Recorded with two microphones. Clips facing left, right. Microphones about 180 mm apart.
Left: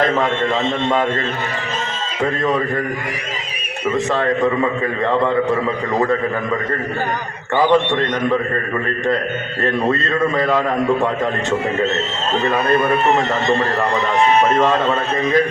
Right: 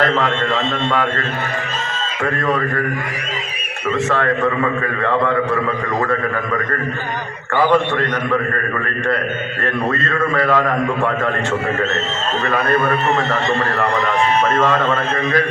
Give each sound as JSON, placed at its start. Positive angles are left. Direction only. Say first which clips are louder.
{"t": 0.0, "sound": "a man's voice", "louder": "left 1 dB", "side_deg": 20}
{"t": 2.2, "sound": "a man's voice", "louder": "left 1 dB", "side_deg": 20}
{"t": 3.9, "sound": "a man's voice", "louder": "even", "side_deg": 15}
{"t": 7.5, "sound": "a man's voice", "louder": "left 1 dB", "side_deg": 20}
{"t": 9.6, "sound": "a man's voice", "louder": "left 2 dB", "side_deg": 20}
{"t": 12.4, "sound": "a man's voice", "louder": "left 1 dB", "side_deg": 20}